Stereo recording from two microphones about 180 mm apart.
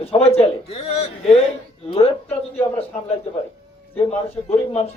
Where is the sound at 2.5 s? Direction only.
35° left (ahead or behind).